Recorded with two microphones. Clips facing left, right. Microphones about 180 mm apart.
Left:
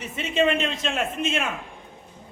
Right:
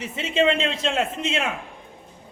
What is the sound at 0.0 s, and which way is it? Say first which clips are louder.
A man's voice: right 1 dB; 25° right (ahead or behind).